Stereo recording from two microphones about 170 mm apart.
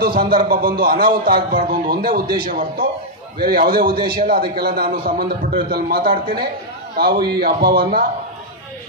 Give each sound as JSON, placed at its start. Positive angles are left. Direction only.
{"t": 0.0, "sound": "speech", "side_deg": -60}